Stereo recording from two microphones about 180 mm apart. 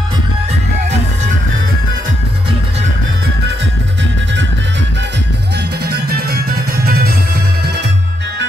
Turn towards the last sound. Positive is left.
turn(degrees=-70)  # may be behind; listen again after turning